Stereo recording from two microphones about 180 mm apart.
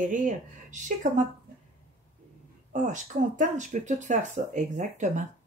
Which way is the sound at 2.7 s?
45° right (ahead or behind).